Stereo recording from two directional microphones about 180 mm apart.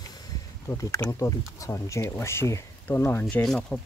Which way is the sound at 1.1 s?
20° left (ahead or behind).